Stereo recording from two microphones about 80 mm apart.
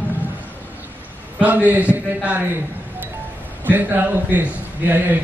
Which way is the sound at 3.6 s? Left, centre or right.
Right.